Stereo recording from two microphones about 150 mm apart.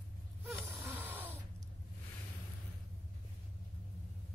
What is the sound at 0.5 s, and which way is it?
Gasp, 15° right (ahead or behind).